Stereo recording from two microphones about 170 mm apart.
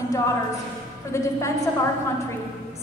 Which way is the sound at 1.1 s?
15° left (ahead or behind).